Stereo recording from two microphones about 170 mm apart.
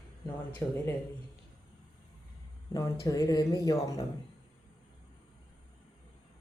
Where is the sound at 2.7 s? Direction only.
20° left (ahead or behind).